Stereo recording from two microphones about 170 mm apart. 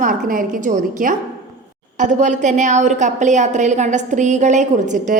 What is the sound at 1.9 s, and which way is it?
A woman's voice, 45° right (ahead or behind).